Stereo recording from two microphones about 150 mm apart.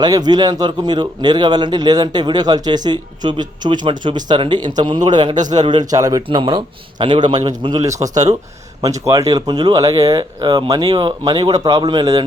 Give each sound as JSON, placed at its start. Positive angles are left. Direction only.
{"t": 0.0, "sound": "a man's voice", "side_deg": -25}